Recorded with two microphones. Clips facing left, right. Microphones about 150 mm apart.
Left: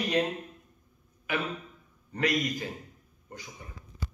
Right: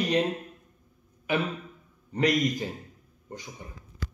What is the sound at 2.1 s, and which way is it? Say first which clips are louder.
Speech: right 4 dB; 20° right (ahead or behind).